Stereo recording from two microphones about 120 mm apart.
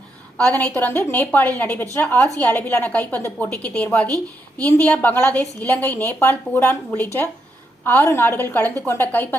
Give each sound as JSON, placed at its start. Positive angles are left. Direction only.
{"t": 0.6, "sound": "a woman's voice", "side_deg": 15}